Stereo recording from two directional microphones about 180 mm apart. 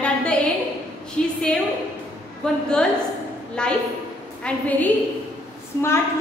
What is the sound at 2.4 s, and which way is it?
A woman's voice, 5° left (ahead or behind).